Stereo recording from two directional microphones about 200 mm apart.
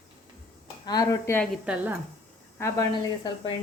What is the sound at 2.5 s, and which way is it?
Speech, 15° left (ahead or behind).